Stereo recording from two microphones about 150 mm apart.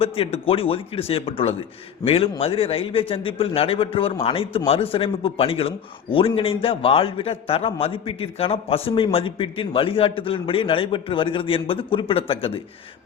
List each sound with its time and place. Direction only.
0.0 s a man's voice: 40° left (ahead or behind)